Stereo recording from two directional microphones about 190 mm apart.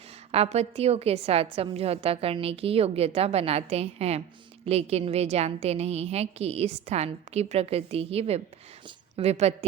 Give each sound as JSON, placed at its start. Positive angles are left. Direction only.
{"t": 0.3, "sound": "a woman's voice", "side_deg": -35}